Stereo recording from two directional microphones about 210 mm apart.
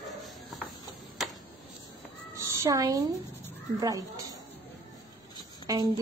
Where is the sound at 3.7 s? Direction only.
15° right (ahead or behind).